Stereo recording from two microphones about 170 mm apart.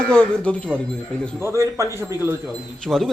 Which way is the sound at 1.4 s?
15° right (ahead or behind).